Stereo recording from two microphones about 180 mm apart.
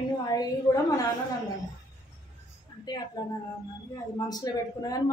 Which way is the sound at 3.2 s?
20° left (ahead or behind).